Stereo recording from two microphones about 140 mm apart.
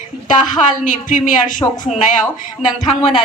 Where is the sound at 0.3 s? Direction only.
65° left (ahead or behind).